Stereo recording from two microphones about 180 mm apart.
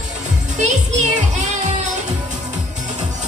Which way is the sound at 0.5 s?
40° right (ahead or behind).